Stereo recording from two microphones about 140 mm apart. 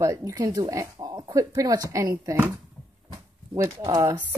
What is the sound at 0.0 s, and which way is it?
Speech, 25° right (ahead or behind).